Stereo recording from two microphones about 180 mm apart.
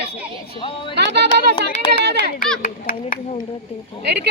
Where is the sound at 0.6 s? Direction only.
25° left (ahead or behind).